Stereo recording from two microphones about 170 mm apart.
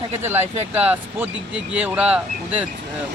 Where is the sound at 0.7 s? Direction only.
10° right (ahead or behind).